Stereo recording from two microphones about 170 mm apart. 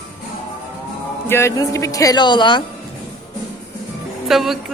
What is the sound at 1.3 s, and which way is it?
Speech, 15° left (ahead or behind).